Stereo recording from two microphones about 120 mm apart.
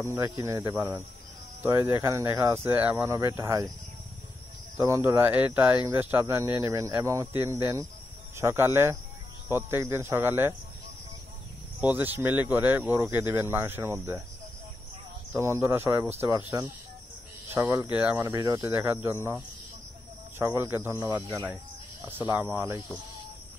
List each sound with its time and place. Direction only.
0.1 s speech: 25° right (ahead or behind)
3.2 s speech: 25° right (ahead or behind)
4.7 s speech: 25° right (ahead or behind)
11.8 s speech: 15° right (ahead or behind)
15.3 s speech: 25° right (ahead or behind)
18.2 s speech: 25° right (ahead or behind)